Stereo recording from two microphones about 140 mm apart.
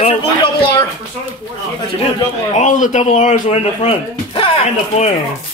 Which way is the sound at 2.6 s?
60° left (ahead or behind).